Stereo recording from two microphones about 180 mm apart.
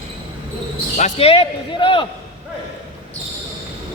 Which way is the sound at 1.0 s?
40° left (ahead or behind).